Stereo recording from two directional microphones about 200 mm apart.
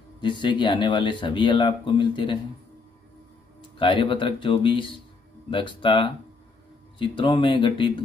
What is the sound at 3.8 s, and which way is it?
Speech, 25° left (ahead or behind).